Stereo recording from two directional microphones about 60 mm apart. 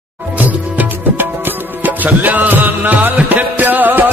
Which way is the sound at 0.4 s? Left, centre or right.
Right.